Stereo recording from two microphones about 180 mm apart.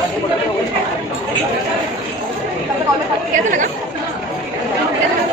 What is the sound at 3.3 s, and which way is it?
Speech, 45° right (ahead or behind).